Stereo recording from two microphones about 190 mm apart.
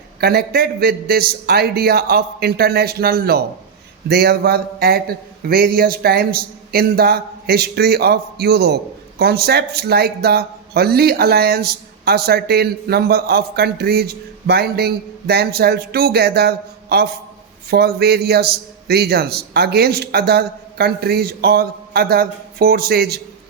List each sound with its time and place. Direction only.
0.2 s a man's voice: 55° right (ahead or behind)